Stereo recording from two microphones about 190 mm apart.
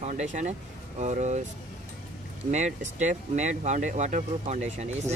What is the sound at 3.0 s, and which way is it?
Speech, 40° right (ahead or behind).